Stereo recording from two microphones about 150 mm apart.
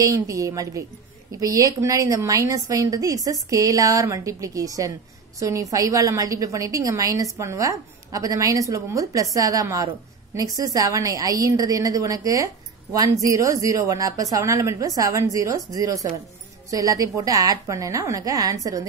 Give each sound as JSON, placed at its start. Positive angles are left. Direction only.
{"t": 0.0, "sound": "a woman's voice", "side_deg": -20}